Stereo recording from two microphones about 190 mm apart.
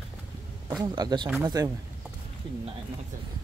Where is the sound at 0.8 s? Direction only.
20° right (ahead or behind).